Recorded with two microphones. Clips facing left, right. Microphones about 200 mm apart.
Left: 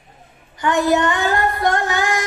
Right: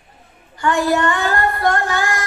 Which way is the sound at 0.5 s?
20° left (ahead or behind).